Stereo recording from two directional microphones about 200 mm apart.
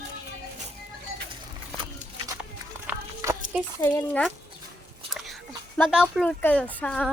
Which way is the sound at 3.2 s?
15° right (ahead or behind).